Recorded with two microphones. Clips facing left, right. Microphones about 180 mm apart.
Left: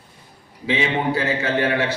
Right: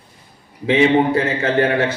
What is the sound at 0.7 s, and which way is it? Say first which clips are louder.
Speech: right 7 dB; 55° right (ahead or behind).